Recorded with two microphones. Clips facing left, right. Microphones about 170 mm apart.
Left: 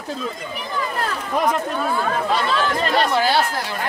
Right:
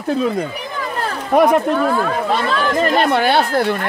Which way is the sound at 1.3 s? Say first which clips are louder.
Right 9 dB; 60° right (ahead or behind).